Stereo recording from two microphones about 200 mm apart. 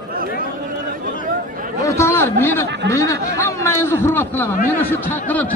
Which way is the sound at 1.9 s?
15° left (ahead or behind).